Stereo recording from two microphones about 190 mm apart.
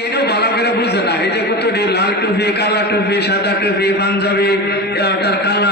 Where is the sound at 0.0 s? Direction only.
60° left (ahead or behind).